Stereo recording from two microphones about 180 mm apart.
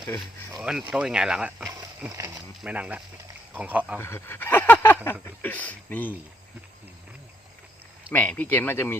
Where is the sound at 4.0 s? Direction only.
15° left (ahead or behind).